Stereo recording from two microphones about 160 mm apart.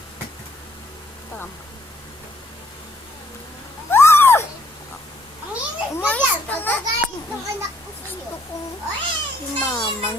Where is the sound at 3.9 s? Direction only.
15° left (ahead or behind).